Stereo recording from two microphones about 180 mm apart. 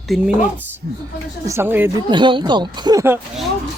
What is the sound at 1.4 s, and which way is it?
Speech, 15° right (ahead or behind).